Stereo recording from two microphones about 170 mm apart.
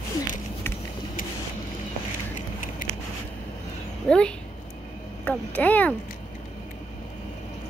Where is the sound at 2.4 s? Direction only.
55° left (ahead or behind).